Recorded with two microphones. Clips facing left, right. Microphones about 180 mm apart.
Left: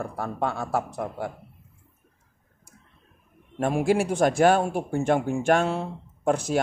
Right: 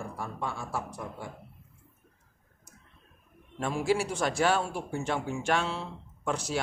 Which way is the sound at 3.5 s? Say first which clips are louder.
Left 6 dB; 50° left (ahead or behind).